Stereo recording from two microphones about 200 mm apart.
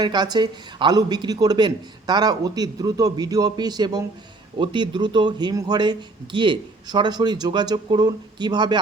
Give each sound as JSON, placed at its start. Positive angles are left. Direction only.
{"t": 0.0, "sound": "a man's voice", "side_deg": -20}